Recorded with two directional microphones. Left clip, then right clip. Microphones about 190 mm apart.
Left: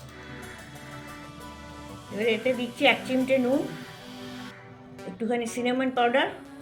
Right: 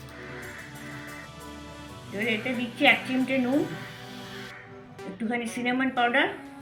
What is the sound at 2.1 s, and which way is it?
A woman's voice, 60° left (ahead or behind).